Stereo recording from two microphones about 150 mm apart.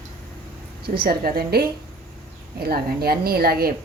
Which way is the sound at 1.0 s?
90° right.